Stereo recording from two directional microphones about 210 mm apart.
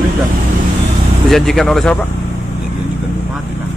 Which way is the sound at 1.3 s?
Centre (ahead or behind).